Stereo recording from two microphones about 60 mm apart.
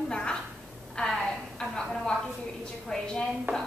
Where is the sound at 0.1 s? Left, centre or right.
Centre.